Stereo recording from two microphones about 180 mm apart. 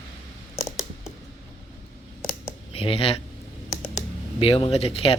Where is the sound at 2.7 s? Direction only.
30° left (ahead or behind).